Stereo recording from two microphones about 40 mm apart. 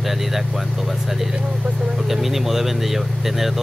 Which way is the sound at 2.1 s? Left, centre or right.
Centre.